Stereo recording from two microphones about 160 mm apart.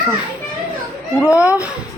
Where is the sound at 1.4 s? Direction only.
10° right (ahead or behind).